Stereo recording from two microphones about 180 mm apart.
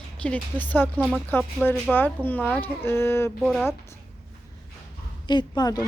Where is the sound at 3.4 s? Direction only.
Centre (ahead or behind).